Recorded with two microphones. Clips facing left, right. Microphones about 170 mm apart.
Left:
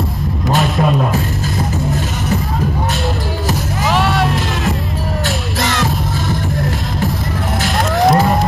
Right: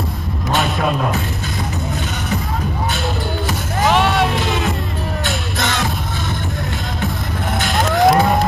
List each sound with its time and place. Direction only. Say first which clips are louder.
3.4 s music: right 1 dB; centre (ahead or behind)
7.6 s music: even; centre (ahead or behind)